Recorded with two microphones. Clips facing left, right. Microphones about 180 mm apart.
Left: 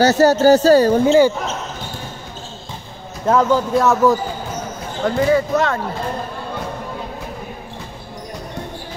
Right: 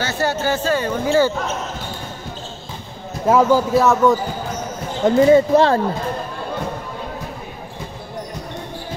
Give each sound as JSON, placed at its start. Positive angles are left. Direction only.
{"t": 0.0, "sound": "speech", "side_deg": 40}
{"t": 1.0, "sound": "speech", "side_deg": 20}
{"t": 3.3, "sound": "a man's voice", "side_deg": -10}
{"t": 5.0, "sound": "speech", "side_deg": -30}